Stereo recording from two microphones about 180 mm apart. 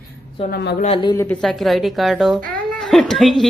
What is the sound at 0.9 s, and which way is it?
Speech, 20° left (ahead or behind).